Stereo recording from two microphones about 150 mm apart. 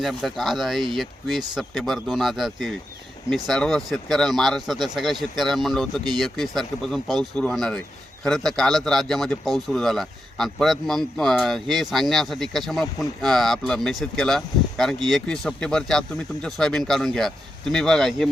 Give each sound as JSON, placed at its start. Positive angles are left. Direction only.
{"t": 0.0, "sound": "speech", "side_deg": 0}